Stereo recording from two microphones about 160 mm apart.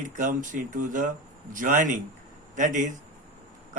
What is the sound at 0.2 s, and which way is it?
A man's voice, 55° right (ahead or behind).